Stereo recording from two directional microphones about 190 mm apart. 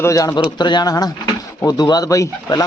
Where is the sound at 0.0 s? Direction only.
15° left (ahead or behind).